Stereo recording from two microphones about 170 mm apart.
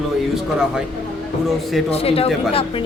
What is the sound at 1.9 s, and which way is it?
Speech, 35° left (ahead or behind).